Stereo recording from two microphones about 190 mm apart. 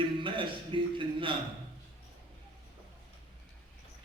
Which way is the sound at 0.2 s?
25° right (ahead or behind).